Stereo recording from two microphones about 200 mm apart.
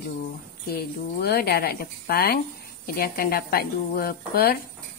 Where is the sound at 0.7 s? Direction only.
50° left (ahead or behind).